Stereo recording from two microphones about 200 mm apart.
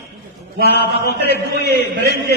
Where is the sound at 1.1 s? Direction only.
55° left (ahead or behind).